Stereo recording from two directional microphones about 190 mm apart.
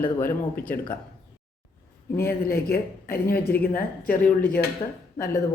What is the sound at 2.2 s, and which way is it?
Speech, 55° left (ahead or behind).